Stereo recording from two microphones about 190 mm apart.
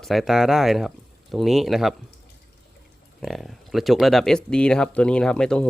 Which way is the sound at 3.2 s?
Centre (ahead or behind).